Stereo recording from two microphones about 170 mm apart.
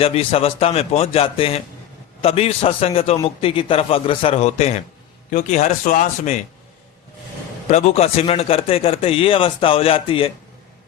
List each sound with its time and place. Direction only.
0.0 s speech: 35° left (ahead or behind)
7.7 s speech: 40° left (ahead or behind)